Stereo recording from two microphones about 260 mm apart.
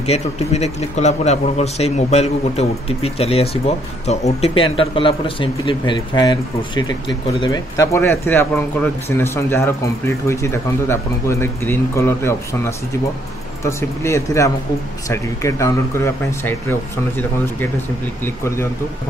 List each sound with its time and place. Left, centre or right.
0.0 s a man's voice: left
18.2 s a man's voice: centre